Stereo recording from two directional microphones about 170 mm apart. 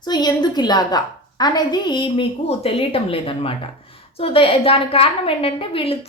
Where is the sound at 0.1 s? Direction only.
25° left (ahead or behind).